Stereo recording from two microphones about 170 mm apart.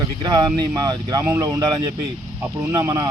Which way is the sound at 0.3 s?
25° right (ahead or behind).